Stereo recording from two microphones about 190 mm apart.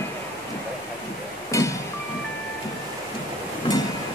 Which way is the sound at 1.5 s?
15° left (ahead or behind).